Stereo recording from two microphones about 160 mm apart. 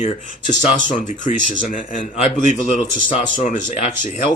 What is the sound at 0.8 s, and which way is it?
A man's voice, 55° left (ahead or behind).